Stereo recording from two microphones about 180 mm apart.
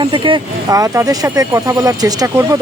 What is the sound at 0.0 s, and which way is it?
Speech, 25° right (ahead or behind).